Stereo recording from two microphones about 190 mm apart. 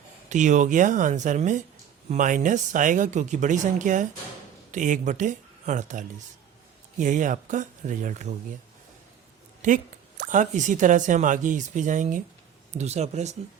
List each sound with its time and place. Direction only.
0.3 s speech: 40° right (ahead or behind)
9.6 s a sound: 45° right (ahead or behind)
10.2 s speech: 40° right (ahead or behind)